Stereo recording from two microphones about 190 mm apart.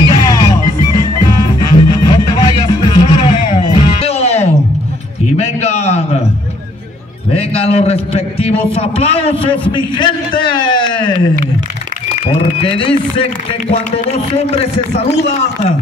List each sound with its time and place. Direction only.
0.1 s music: 20° left (ahead or behind)
5.4 s a sound: 35° left (ahead or behind)
7.3 s a man's voice: 30° left (ahead or behind)
12.3 s a man's voice: 30° left (ahead or behind)